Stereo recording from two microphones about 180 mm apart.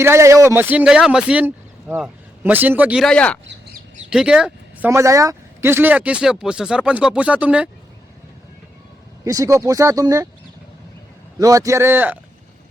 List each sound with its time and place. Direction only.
0.0 s speech: 15° right (ahead or behind)
4.9 s speech: 15° right (ahead or behind)
9.2 s speech: 20° right (ahead or behind)
11.3 s speech: 20° right (ahead or behind)